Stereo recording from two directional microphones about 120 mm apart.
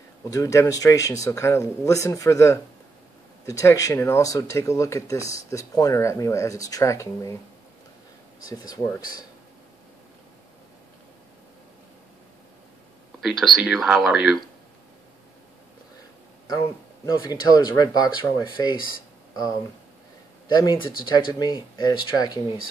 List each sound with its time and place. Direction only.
0.2 s speech: 30° left (ahead or behind)
8.5 s speech: 35° left (ahead or behind)
13.2 s speech: centre (ahead or behind)
16.4 s speech: 35° left (ahead or behind)
20.4 s speech: 40° left (ahead or behind)